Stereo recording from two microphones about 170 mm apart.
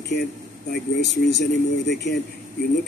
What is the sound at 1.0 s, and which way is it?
Speech, 85° left.